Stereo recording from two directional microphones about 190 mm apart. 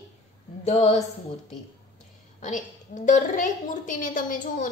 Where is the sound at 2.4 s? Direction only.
40° left (ahead or behind).